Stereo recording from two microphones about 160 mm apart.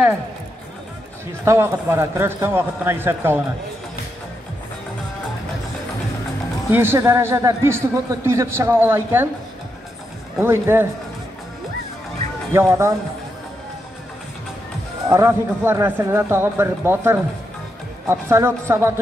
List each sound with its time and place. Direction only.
1.4 s a man's voice: 15° right (ahead or behind)
6.7 s a man's voice: 15° right (ahead or behind)
10.4 s a man's voice: 15° right (ahead or behind)
12.5 s a man's voice: 15° right (ahead or behind)
15.0 s a man's voice: 15° right (ahead or behind)